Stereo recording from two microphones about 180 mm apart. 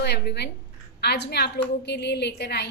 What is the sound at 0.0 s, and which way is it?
A woman's voice, 65° left (ahead or behind).